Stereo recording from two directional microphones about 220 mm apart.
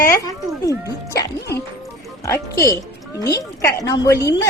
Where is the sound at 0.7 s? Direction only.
15° right (ahead or behind).